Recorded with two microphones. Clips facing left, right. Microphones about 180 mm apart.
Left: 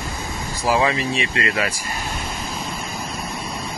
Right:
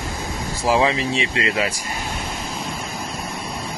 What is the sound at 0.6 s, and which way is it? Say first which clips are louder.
Speech: right 1 dB; 25° right (ahead or behind).